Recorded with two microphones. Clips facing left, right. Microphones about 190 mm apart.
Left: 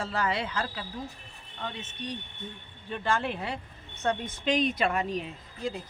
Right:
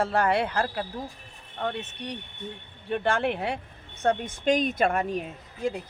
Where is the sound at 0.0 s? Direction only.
60° right (ahead or behind).